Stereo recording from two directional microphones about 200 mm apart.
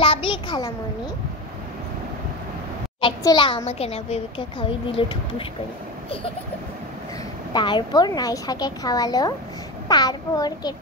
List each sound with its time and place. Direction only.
0.0 s a sound: 25° left (ahead or behind)
3.0 s a child's voice: 25° left (ahead or behind)
7.5 s a child's voice: 20° left (ahead or behind)